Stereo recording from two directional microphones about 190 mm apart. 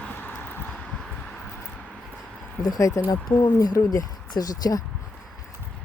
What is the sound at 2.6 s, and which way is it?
Speech, 20° left (ahead or behind).